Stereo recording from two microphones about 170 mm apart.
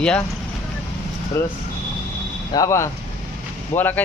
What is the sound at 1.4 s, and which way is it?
Speech, 15° left (ahead or behind).